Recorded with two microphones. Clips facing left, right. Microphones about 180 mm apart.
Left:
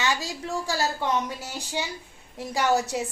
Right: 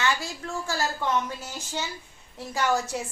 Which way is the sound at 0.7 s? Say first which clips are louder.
Even; 15° left (ahead or behind).